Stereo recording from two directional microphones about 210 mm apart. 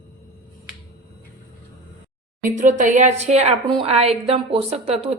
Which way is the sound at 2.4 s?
40° right (ahead or behind).